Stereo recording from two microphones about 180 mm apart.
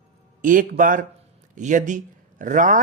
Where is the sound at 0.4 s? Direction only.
50° right (ahead or behind).